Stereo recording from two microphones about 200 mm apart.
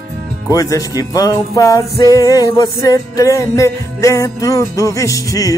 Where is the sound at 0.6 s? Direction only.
15° left (ahead or behind).